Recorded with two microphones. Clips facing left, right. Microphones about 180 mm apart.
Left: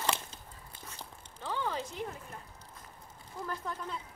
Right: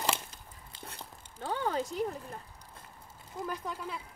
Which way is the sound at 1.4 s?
45° right (ahead or behind).